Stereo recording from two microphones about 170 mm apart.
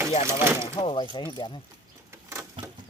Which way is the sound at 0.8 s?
30° left (ahead or behind).